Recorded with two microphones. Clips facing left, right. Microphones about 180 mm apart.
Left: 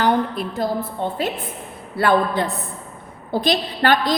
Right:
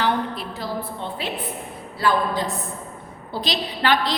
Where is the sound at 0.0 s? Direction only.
50° left (ahead or behind).